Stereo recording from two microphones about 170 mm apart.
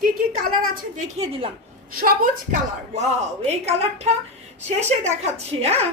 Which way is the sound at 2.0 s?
60° right (ahead or behind).